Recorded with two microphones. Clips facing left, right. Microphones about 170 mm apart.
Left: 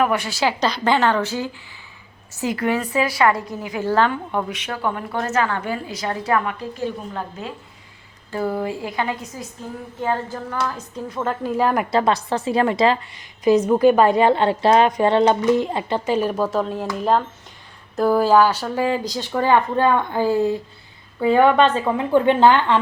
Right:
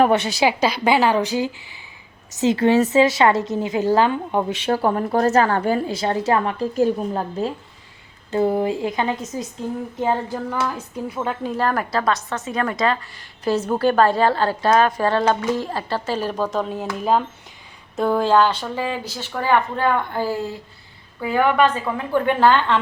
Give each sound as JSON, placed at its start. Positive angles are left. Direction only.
{"t": 0.0, "sound": "a woman's voice", "side_deg": -25}
{"t": 8.3, "sound": "a woman's voice", "side_deg": -20}
{"t": 10.5, "sound": "a woman's voice", "side_deg": -10}
{"t": 11.4, "sound": "a woman's voice", "side_deg": 10}
{"t": 11.9, "sound": "a woman's voice", "side_deg": 25}
{"t": 13.4, "sound": "a woman's voice", "side_deg": 10}